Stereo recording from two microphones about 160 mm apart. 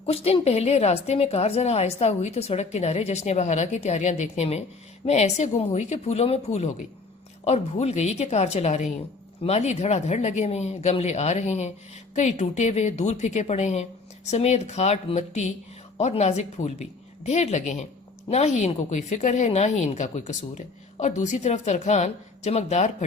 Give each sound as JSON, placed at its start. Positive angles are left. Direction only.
{"t": 0.0, "sound": "a woman's voice", "side_deg": 40}